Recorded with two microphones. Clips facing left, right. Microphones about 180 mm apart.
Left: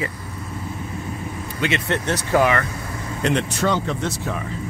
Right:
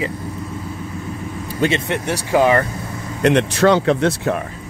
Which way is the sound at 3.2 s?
65° right (ahead or behind).